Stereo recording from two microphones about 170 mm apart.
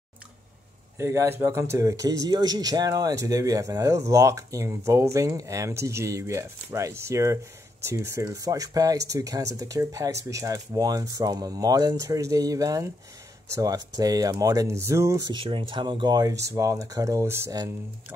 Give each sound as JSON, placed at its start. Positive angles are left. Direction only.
{"t": 0.9, "sound": "speech", "side_deg": -15}